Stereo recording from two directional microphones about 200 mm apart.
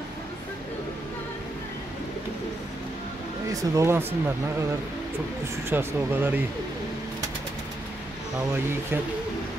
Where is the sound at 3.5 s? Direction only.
15° right (ahead or behind).